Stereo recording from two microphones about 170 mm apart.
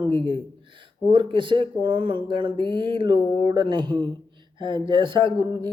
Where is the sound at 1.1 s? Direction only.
30° right (ahead or behind).